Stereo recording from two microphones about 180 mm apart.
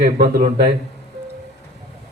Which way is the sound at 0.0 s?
55° right (ahead or behind).